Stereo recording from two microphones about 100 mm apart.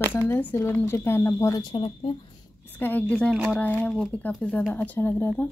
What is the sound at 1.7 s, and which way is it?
Speech, 60° left (ahead or behind).